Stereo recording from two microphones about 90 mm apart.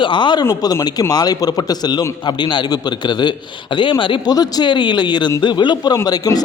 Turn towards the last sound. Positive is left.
turn(degrees=45)  # may be behind; listen again after turning